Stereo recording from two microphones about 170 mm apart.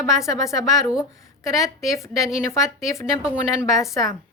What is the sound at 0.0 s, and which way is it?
Speech, 15° left (ahead or behind).